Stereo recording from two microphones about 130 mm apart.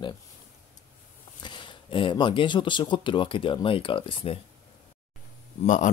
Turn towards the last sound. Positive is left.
turn(degrees=70)  # may be behind; listen again after turning